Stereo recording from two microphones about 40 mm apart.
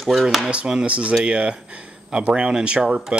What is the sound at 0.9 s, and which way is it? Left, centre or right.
Speech, right.